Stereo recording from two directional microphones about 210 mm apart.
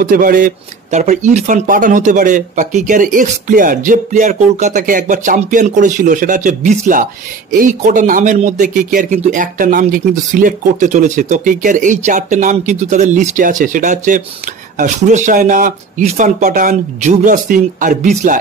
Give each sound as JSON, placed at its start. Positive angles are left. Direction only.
{"t": 0.0, "sound": "speech", "side_deg": -40}